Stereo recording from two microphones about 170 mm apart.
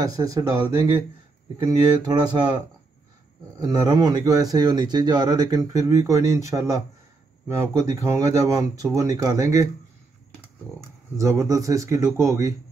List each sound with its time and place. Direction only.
0.0 s speech: 20° right (ahead or behind)
3.6 s speech: 25° right (ahead or behind)
11.1 s speech: 20° right (ahead or behind)